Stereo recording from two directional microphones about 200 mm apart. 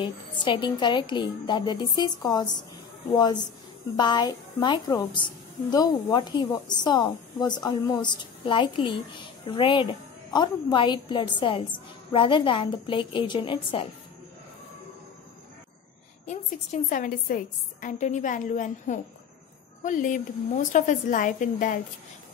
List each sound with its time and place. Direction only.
0.0 s a woman's voice: 25° left (ahead or behind)
16.3 s a woman's voice: 40° left (ahead or behind)